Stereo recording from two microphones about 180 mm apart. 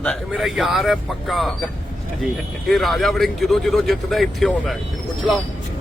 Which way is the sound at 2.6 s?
Centre (ahead or behind).